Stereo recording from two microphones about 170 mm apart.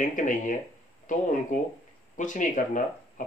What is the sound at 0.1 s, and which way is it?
Speech, 50° left (ahead or behind).